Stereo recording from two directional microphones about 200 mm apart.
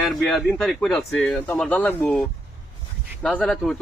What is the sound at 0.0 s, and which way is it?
Speech, centre (ahead or behind).